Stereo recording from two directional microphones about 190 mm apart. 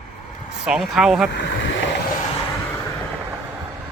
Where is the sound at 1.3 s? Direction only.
70° left (ahead or behind).